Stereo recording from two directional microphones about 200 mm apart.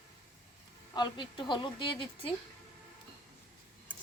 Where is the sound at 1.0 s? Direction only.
25° left (ahead or behind).